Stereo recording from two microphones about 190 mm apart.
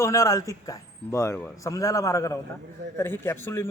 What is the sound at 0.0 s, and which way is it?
A man's voice, 15° left (ahead or behind).